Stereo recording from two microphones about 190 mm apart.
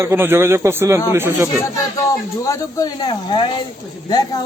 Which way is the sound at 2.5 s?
20° left (ahead or behind).